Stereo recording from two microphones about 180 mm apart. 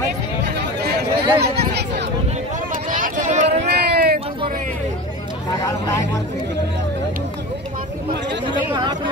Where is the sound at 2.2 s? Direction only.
45° right (ahead or behind).